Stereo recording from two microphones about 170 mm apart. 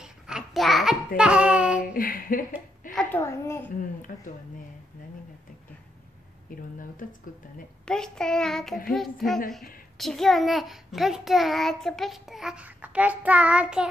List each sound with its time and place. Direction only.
0.0 s a sound: 5° right (ahead or behind)
2.0 s speech: 55° left (ahead or behind)
2.9 s a sound: 5° left (ahead or behind)
3.2 s a child's voice: 15° left (ahead or behind)
4.1 s speech: 55° left (ahead or behind)
6.8 s speech: 50° left (ahead or behind)
7.8 s a child's voice: 5° left (ahead or behind)